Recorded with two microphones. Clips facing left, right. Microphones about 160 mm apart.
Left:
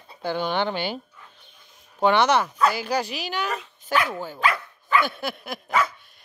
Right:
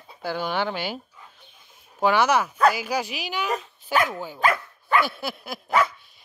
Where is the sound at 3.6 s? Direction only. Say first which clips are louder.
Right 1 dB; 40° right (ahead or behind).